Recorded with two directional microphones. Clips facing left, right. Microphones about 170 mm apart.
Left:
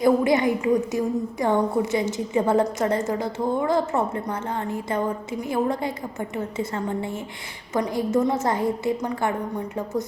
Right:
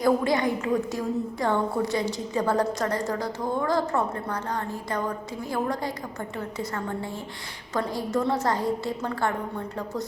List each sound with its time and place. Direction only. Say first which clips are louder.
0.0 s a woman's voice: left 4 dB; 20° left (ahead or behind)